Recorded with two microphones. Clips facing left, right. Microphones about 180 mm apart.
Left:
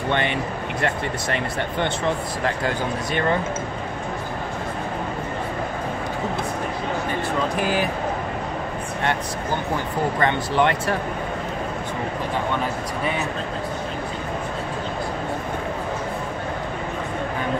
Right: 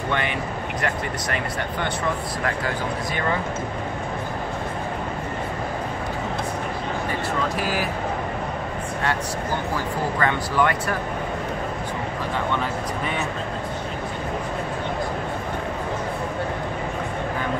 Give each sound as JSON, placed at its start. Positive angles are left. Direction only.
{"t": 0.1, "sound": "speech", "side_deg": 25}
{"t": 10.2, "sound": "speech", "side_deg": 25}